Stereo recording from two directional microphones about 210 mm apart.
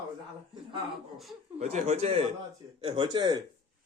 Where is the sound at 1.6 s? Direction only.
30° right (ahead or behind).